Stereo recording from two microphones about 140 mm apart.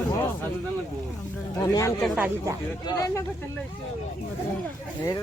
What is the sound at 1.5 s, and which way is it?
Speech, 25° left (ahead or behind).